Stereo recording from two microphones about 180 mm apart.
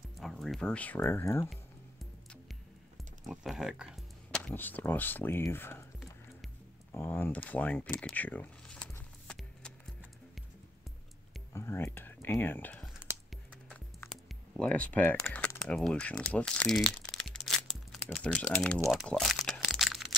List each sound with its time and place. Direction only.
0.2 s speech: centre (ahead or behind)
3.3 s speech: 5° right (ahead or behind); by 5.9 s 10° left (ahead or behind)
6.9 s speech: 15° left (ahead or behind)
11.5 s a sound: 15° left (ahead or behind)
13.3 s music: centre (ahead or behind)
14.6 s speech: 10° left (ahead or behind)
17.1 s crumpling: 5° left (ahead or behind)